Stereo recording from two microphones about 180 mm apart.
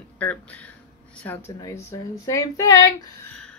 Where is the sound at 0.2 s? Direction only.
10° left (ahead or behind).